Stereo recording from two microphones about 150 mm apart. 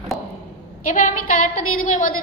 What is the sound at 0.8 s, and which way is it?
A woman's voice, 60° left (ahead or behind).